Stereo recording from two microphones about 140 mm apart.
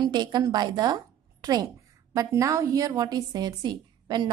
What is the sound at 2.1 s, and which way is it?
A woman's voice, 25° right (ahead or behind).